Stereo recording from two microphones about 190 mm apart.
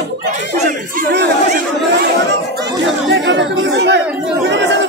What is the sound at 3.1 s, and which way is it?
Speech, 65° right (ahead or behind).